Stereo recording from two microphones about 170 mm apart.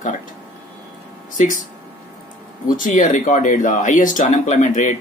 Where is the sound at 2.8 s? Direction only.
50° left (ahead or behind).